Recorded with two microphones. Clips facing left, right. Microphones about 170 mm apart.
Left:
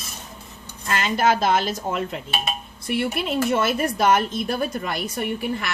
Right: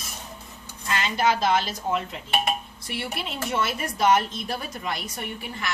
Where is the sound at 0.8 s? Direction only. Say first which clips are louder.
Left 3 dB; 50° left (ahead or behind).